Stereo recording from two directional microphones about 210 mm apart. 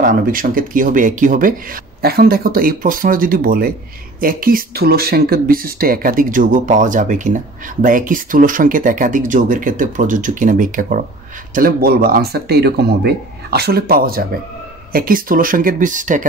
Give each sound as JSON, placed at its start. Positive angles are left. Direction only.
{"t": 0.0, "sound": "speech", "side_deg": -40}